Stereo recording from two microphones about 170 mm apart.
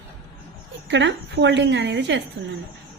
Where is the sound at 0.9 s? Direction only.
90° right.